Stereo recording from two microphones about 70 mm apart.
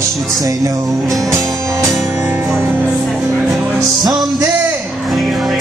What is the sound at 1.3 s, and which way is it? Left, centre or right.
Music, right.